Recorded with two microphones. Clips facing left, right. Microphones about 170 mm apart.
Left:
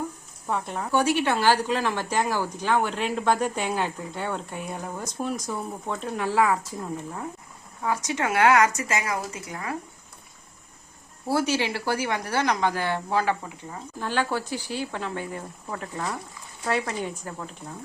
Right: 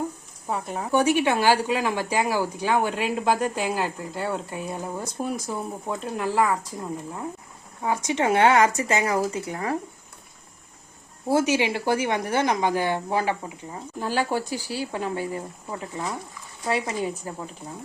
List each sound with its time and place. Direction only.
0.5 s speech: 5° right (ahead or behind)
7.8 s speech: 25° right (ahead or behind)
11.3 s speech: 20° right (ahead or behind)
16.6 s speech: centre (ahead or behind)